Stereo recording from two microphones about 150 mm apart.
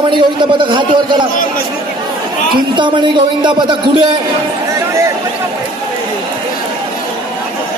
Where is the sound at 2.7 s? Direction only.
30° right (ahead or behind).